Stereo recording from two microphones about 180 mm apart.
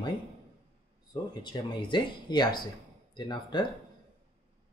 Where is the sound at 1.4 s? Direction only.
25° left (ahead or behind).